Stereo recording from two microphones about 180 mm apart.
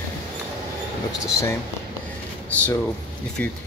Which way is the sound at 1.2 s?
15° left (ahead or behind).